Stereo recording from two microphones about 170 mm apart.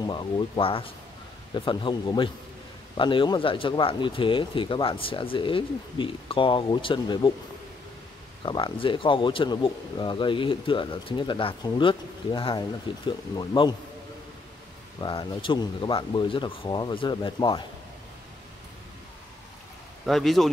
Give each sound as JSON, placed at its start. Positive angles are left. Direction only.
{"t": 0.0, "sound": "speech", "side_deg": 30}
{"t": 8.5, "sound": "speech", "side_deg": 30}
{"t": 15.0, "sound": "speech", "side_deg": 30}
{"t": 20.1, "sound": "speech", "side_deg": 0}